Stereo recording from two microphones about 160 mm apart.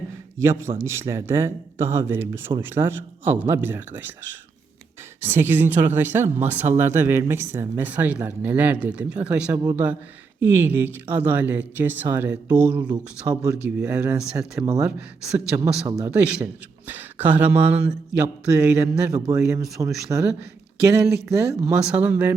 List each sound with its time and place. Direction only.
0.8 s speech: 15° right (ahead or behind)
13.2 s speech: 20° right (ahead or behind)
13.5 s speech: 10° right (ahead or behind)
14.6 s speech: 20° right (ahead or behind)
19.1 s speech: 20° right (ahead or behind)
21.8 s speech: 5° right (ahead or behind)